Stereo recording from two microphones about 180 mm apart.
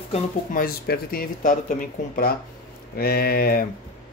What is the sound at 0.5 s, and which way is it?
Speech, 55° left (ahead or behind).